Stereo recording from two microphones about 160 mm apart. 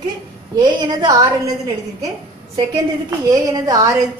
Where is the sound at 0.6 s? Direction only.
25° right (ahead or behind).